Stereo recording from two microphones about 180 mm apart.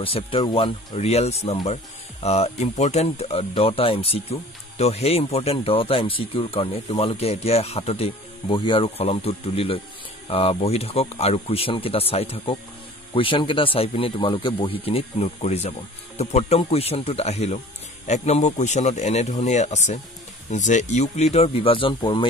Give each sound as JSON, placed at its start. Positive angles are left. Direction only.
{"t": 0.0, "sound": "speech", "side_deg": 30}